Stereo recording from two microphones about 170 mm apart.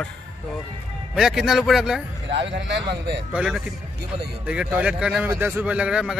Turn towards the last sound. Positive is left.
turn(degrees=-5)  # may be behind; listen again after turning